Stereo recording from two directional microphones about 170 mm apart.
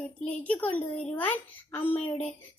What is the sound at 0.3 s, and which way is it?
A child's voice, 10° left (ahead or behind).